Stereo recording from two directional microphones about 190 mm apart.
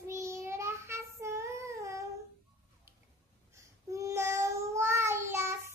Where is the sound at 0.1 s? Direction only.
15° right (ahead or behind).